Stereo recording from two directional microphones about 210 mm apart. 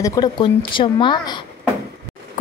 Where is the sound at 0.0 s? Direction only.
20° left (ahead or behind).